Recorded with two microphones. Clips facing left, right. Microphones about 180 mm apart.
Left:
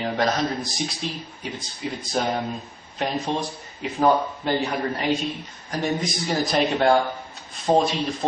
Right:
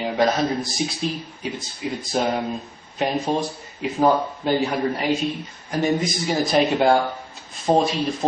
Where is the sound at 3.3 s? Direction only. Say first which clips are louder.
Right 4 dB; 40° right (ahead or behind).